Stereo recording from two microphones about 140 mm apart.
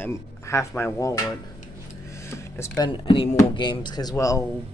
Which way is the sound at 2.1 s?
20° left (ahead or behind).